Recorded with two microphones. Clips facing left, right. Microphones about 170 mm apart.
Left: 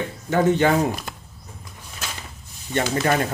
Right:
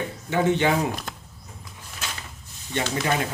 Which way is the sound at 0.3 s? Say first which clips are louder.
Left 3 dB; 45° left (ahead or behind).